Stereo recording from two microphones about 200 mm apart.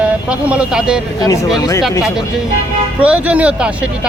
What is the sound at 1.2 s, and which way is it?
Speech, 15° left (ahead or behind).